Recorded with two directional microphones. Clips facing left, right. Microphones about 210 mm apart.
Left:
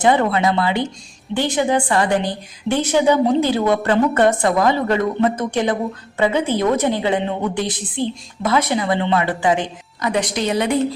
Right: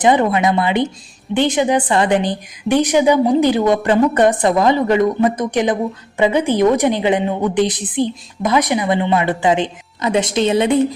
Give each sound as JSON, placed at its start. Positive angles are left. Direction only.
{"t": 0.0, "sound": "a woman's voice", "side_deg": -15}